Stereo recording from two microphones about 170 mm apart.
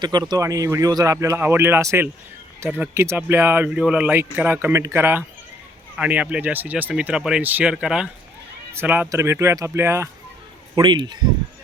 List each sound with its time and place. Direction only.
0.0 s speech: 25° right (ahead or behind)
10.8 s speech: 25° right (ahead or behind)